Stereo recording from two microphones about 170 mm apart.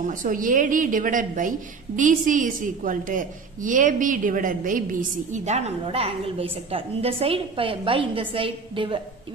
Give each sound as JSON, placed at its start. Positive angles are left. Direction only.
{"t": 0.0, "sound": "a woman's voice", "side_deg": -50}